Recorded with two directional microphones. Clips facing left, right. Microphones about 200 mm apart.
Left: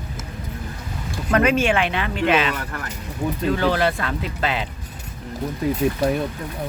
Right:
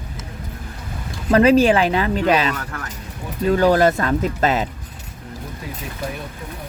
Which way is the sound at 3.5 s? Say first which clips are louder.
Right 8 dB; 45° right (ahead or behind).